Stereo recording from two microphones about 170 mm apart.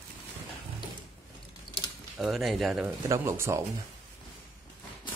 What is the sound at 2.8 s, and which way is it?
Speech, 15° right (ahead or behind).